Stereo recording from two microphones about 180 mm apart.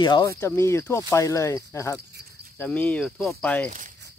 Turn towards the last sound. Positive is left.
turn(degrees=5)  # may be behind; listen again after turning